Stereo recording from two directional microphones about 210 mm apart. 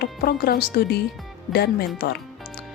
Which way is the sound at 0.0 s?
45° left (ahead or behind).